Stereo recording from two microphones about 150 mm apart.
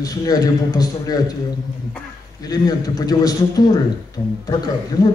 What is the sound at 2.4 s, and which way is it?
A man's voice, 25° left (ahead or behind).